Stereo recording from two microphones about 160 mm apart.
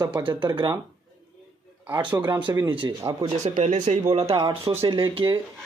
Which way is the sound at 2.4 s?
25° right (ahead or behind).